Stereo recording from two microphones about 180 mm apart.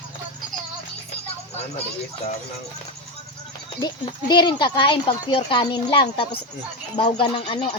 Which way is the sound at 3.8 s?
25° left (ahead or behind).